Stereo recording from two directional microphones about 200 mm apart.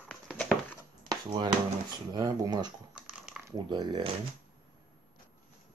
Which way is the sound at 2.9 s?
5° right (ahead or behind).